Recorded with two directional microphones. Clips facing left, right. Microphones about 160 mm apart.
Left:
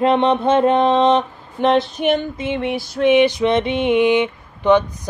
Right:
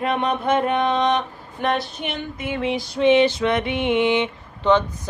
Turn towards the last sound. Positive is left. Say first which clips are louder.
# left 4 dB
turn(degrees=15)  # may be behind; listen again after turning